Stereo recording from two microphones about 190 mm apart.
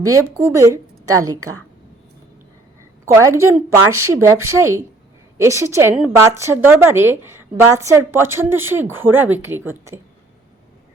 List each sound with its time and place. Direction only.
0.0 s a woman's voice: 15° right (ahead or behind)
3.1 s a woman's voice: 15° right (ahead or behind)